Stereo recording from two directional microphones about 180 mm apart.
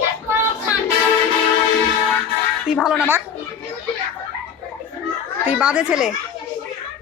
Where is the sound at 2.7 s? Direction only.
Centre (ahead or behind).